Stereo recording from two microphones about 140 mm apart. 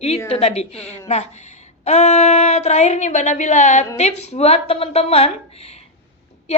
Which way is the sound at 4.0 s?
50° left (ahead or behind).